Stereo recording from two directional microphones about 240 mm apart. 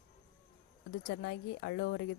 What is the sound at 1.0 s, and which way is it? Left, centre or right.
A woman's voice, left.